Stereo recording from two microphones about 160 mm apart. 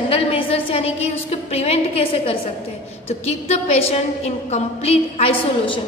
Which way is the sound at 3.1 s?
40° left (ahead or behind).